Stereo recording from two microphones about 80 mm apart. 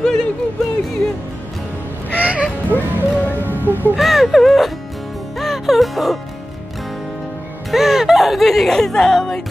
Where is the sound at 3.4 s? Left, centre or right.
Right.